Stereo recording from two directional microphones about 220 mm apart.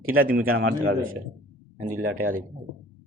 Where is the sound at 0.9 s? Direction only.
40° right (ahead or behind).